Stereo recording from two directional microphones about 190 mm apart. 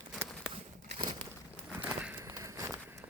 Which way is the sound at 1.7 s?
10° right (ahead or behind).